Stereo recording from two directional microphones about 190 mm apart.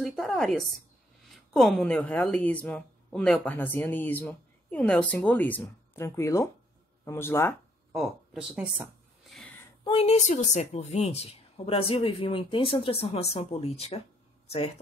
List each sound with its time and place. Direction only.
0.0 s a woman's voice: centre (ahead or behind)
7.9 s speech: centre (ahead or behind)
9.8 s speech: 30° left (ahead or behind)